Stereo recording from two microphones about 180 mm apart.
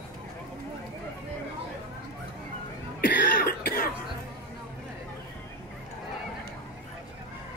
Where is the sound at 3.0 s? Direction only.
60° left (ahead or behind).